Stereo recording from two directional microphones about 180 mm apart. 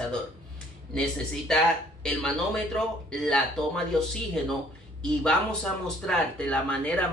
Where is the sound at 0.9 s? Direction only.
5° left (ahead or behind).